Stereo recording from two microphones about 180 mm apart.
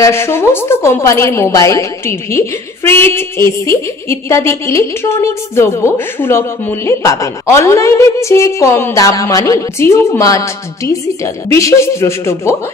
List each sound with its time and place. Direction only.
0.0 s a woman's voice: 15° left (ahead or behind)